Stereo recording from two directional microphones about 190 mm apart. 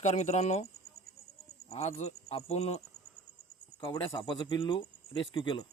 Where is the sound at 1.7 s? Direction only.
35° left (ahead or behind).